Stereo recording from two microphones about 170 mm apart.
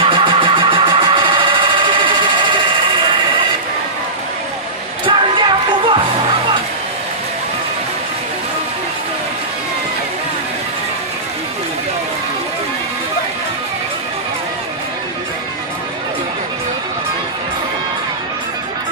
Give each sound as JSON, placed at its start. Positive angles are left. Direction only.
{"t": 0.0, "sound": "engine", "side_deg": -30}
{"t": 5.0, "sound": "music", "side_deg": -30}